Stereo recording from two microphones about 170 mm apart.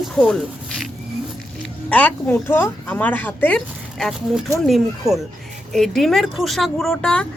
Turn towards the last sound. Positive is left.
turn(degrees=5)  # may be behind; listen again after turning